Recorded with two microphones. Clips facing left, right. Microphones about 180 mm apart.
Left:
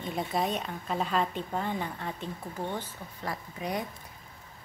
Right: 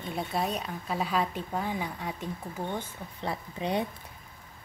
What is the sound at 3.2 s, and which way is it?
Speech, 25° right (ahead or behind).